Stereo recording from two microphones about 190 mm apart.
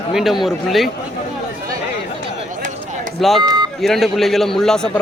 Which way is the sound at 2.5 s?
40° right (ahead or behind).